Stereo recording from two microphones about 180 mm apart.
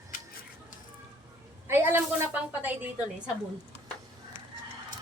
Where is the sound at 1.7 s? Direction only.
15° right (ahead or behind).